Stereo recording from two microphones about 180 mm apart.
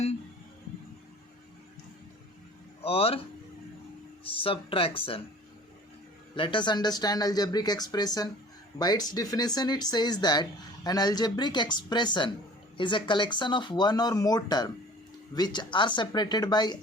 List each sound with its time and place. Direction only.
2.8 s speech: 30° left (ahead or behind)
4.2 s speech: 30° left (ahead or behind)
6.3 s speech: 25° left (ahead or behind)